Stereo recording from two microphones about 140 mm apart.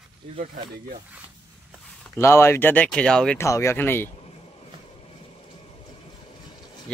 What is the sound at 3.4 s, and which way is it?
Speech, 20° left (ahead or behind).